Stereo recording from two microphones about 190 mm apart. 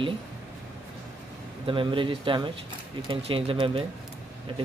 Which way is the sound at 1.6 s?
25° right (ahead or behind).